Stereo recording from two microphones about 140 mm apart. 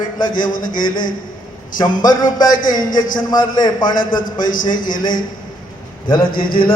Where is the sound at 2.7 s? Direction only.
30° left (ahead or behind).